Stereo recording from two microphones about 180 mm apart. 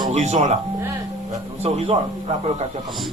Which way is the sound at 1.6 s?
35° right (ahead or behind).